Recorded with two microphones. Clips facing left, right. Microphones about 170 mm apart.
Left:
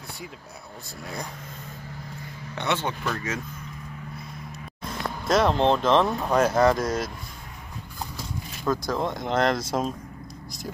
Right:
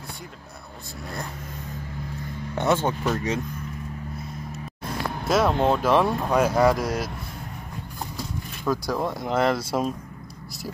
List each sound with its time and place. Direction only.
2.5 s speech: 45° right (ahead or behind)
3.0 s speech: 30° right (ahead or behind)
5.3 s speech: 5° right (ahead or behind)
8.6 s speech: 10° right (ahead or behind)